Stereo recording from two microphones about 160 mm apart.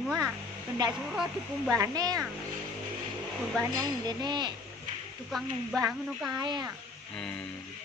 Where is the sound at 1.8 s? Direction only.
25° right (ahead or behind).